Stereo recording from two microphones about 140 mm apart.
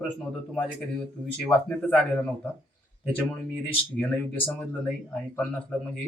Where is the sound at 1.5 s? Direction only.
10° left (ahead or behind).